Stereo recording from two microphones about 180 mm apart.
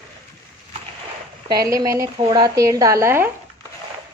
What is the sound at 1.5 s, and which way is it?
Speech, 20° right (ahead or behind).